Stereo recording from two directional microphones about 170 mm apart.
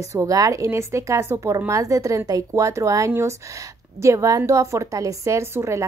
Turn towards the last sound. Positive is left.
turn(degrees=-15)  # may be behind; listen again after turning